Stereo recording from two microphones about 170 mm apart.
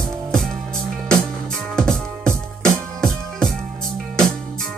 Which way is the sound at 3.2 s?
5° left (ahead or behind).